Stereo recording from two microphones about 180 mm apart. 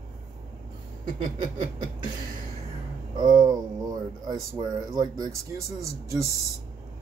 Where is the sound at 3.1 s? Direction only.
20° right (ahead or behind).